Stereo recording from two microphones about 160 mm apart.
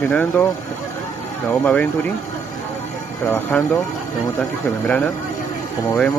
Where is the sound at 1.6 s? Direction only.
5° left (ahead or behind).